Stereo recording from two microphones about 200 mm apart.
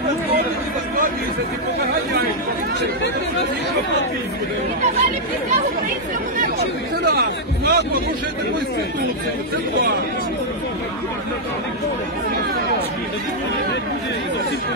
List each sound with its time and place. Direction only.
7.2 s speech: 50° right (ahead or behind)